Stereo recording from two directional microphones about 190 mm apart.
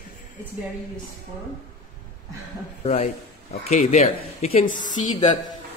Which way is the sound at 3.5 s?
35° left (ahead or behind).